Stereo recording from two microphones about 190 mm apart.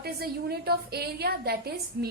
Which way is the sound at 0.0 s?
55° right (ahead or behind).